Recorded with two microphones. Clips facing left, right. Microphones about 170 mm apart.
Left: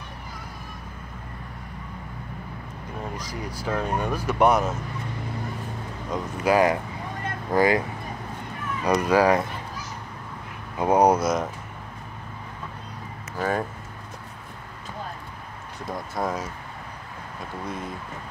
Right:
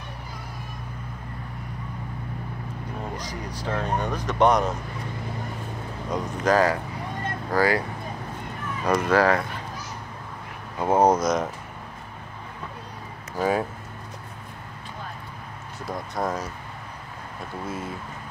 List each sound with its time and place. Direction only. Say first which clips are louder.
3.2 s speech: even; 10° left (ahead or behind)
6.0 s speech: even; centre (ahead or behind)
6.5 s speech: left 1 dB; 15° left (ahead or behind)
8.8 s speech: left 1 dB; 10° left (ahead or behind)
10.8 s speech: left 1 dB; 15° left (ahead or behind)
13.4 s speech: right 2 dB; 10° right (ahead or behind)
15.8 s speech: even; centre (ahead or behind)